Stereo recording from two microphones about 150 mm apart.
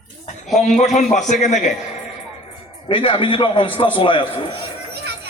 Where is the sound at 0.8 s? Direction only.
50° left (ahead or behind).